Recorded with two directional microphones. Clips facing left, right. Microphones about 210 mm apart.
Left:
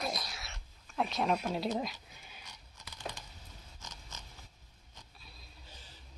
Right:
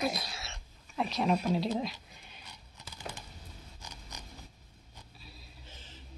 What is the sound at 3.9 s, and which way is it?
Zipper, 15° right (ahead or behind).